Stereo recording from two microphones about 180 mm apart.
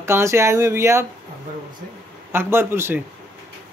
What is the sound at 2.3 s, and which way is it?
Speech, 15° right (ahead or behind).